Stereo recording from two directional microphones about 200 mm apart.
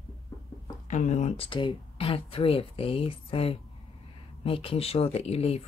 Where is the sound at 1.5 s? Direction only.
25° left (ahead or behind).